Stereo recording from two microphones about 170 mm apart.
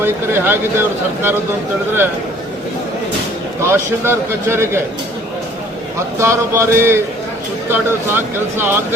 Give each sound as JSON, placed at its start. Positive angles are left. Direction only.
{"t": 0.0, "sound": "speech", "side_deg": -10}
{"t": 3.7, "sound": "speech", "side_deg": -15}
{"t": 6.1, "sound": "speech", "side_deg": -15}